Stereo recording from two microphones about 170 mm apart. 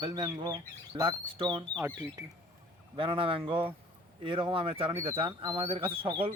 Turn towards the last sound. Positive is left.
turn(degrees=-30)  # may be behind; listen again after turning